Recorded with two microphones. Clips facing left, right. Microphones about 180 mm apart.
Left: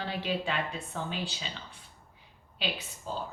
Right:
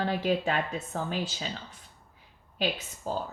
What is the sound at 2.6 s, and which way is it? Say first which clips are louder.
Speech: right 5 dB; 45° right (ahead or behind).